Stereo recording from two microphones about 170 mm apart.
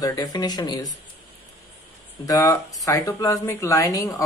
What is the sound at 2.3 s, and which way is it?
A woman's voice, 20° left (ahead or behind).